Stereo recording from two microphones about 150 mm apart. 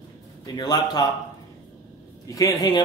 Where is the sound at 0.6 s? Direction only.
30° left (ahead or behind).